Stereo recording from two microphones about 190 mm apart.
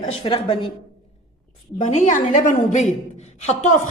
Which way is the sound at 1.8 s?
40° left (ahead or behind).